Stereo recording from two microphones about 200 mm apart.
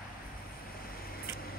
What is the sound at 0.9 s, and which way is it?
Vehicle, 45° left (ahead or behind).